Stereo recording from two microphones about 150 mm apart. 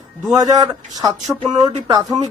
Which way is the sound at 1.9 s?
30° right (ahead or behind).